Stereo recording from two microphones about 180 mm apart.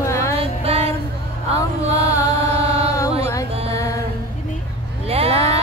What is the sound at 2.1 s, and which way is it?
Mantra, 15° left (ahead or behind).